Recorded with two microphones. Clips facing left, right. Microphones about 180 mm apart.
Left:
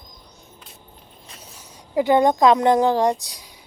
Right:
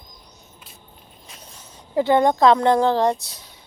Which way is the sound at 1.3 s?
5° left (ahead or behind).